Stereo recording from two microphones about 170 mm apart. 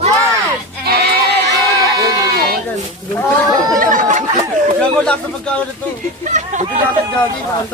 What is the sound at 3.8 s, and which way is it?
Chatter, 50° right (ahead or behind).